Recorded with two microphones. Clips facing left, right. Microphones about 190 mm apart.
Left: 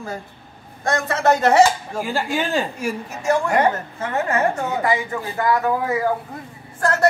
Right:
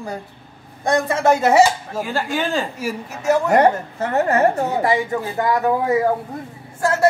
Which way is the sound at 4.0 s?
40° right (ahead or behind).